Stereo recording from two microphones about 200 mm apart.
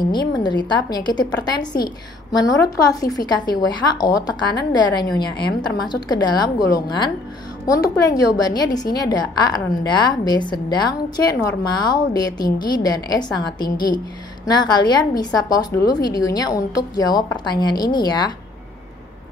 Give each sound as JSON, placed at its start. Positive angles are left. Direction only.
{"t": 0.1, "sound": "a woman's voice", "side_deg": 20}